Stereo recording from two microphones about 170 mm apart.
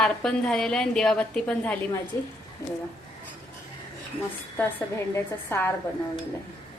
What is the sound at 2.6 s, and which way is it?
Speech, 20° left (ahead or behind).